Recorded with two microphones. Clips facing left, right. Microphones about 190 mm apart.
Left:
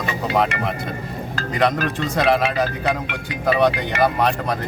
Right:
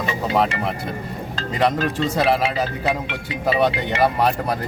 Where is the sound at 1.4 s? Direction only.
25° right (ahead or behind).